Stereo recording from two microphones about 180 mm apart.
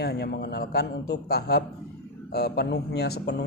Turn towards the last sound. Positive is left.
turn(degrees=65)  # may be behind; listen again after turning